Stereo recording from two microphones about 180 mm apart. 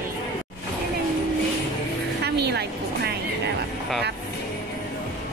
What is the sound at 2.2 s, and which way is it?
Music, 65° right (ahead or behind).